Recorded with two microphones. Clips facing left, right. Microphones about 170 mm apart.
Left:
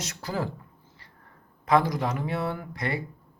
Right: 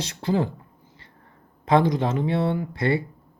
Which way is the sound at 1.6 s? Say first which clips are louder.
Right 3 dB; 25° right (ahead or behind).